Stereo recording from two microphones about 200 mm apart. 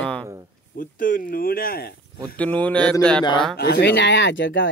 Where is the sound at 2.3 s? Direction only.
5° left (ahead or behind).